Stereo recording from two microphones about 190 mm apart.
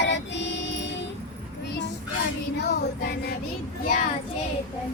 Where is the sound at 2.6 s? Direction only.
55° left (ahead or behind).